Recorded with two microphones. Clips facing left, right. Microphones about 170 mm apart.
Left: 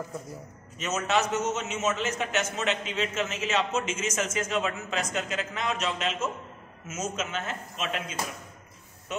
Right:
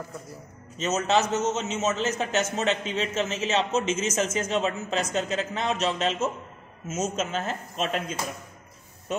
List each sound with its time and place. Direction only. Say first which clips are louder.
0.7 s a man's voice: right 3 dB; 25° right (ahead or behind)
3.7 s a man's voice: right 4 dB; 40° right (ahead or behind)
4.1 s a man's voice: right 3 dB; 30° right (ahead or behind)